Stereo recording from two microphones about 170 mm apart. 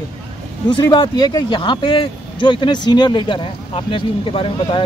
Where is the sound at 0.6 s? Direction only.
25° left (ahead or behind).